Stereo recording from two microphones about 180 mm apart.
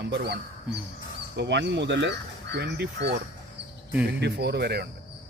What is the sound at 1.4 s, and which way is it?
A man's voice, 75° right (ahead or behind).